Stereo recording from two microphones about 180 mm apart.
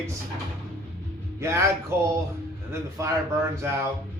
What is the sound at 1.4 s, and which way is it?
Speech, 15° right (ahead or behind).